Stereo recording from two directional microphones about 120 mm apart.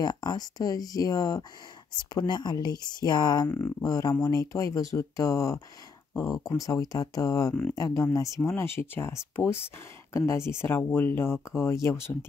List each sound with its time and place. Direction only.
0.0 s speech: 35° left (ahead or behind)
3.4 s speech: 20° left (ahead or behind)
3.8 s speech: 30° left (ahead or behind)